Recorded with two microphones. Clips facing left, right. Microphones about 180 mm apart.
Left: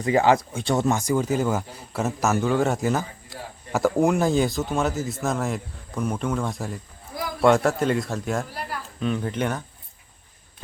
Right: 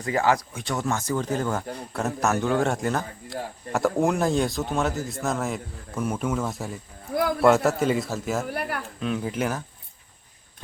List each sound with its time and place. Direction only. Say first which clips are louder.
0.0 s speech: left 4 dB; 20° left (ahead or behind)
0.9 s a man's voice: left 3 dB; 10° left (ahead or behind)
7.2 s speech: right 7 dB; 60° right (ahead or behind)
7.4 s a man's voice: left 2 dB; centre (ahead or behind)
8.4 s speech: right 4 dB; 60° right (ahead or behind)
9.0 s a man's voice: left 2 dB; centre (ahead or behind)